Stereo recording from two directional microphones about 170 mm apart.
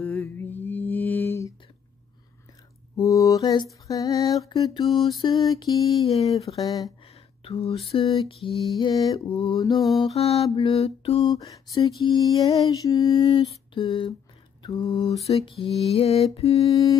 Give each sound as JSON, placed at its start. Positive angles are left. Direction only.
{"t": 0.0, "sound": "mantra", "side_deg": 10}
{"t": 3.0, "sound": "mantra", "side_deg": 20}
{"t": 3.8, "sound": "lullaby", "side_deg": 20}
{"t": 7.4, "sound": "a sound", "side_deg": 35}
{"t": 8.7, "sound": "lullaby", "side_deg": 25}
{"t": 10.1, "sound": "a sound", "side_deg": 35}
{"t": 11.2, "sound": "lullaby", "side_deg": 20}
{"t": 14.6, "sound": "mantra", "side_deg": 25}
{"t": 15.2, "sound": "a sound", "side_deg": 35}
{"t": 16.7, "sound": "lullaby", "side_deg": 20}